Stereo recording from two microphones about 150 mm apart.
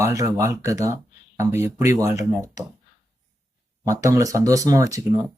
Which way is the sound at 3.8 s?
20° right (ahead or behind).